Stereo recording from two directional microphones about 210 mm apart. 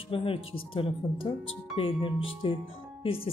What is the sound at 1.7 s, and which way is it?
Speech, 25° left (ahead or behind).